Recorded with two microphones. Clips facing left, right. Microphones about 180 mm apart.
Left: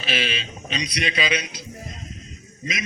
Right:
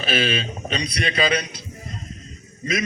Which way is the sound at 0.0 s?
50° right (ahead or behind).